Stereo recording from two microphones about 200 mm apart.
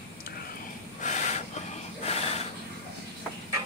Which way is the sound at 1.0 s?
35° left (ahead or behind).